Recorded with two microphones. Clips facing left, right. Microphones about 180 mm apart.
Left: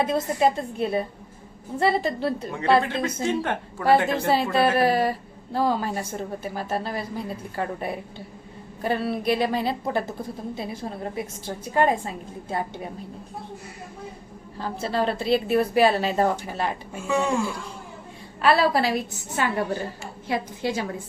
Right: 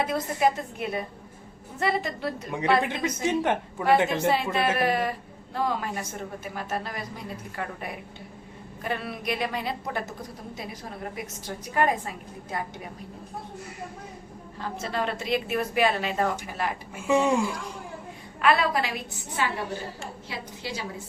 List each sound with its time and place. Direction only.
0.0 s a woman's voice: 25° left (ahead or behind)
2.8 s a woman's voice: 15° right (ahead or behind)
4.5 s a woman's voice: 35° left (ahead or behind)
14.6 s a woman's voice: 30° left (ahead or behind)
17.1 s a woman's voice: 20° right (ahead or behind)
18.4 s a woman's voice: 35° left (ahead or behind); by 20.8 s 50° left (ahead or behind)